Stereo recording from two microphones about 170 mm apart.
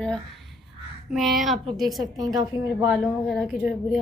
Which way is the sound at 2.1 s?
20° right (ahead or behind).